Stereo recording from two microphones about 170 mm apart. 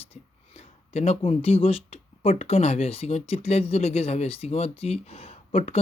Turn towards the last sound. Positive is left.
turn(degrees=35)  # may be behind; listen again after turning